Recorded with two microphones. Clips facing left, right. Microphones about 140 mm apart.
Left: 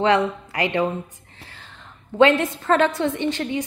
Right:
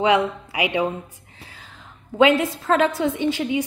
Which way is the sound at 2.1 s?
5° right (ahead or behind).